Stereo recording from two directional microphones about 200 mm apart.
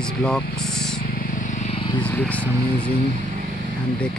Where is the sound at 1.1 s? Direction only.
45° left (ahead or behind); by 2.0 s 25° left (ahead or behind).